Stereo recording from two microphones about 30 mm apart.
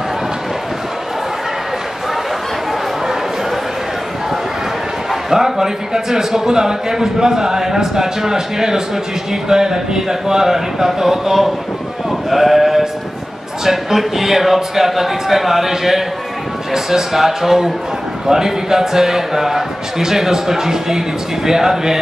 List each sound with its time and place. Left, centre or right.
5.3 s a man's voice: centre
12.3 s sheep: centre
13.7 s a man's voice: centre